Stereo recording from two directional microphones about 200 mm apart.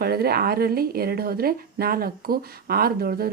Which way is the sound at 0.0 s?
50° right (ahead or behind).